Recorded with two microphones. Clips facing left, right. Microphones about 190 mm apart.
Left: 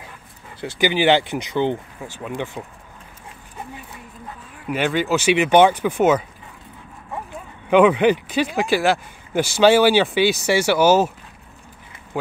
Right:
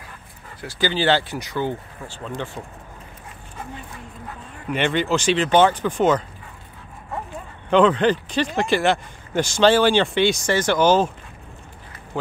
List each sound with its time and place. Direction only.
0.6 s speech: 20° left (ahead or behind)
4.6 s speech: 5° left (ahead or behind)
7.7 s speech: 10° left (ahead or behind)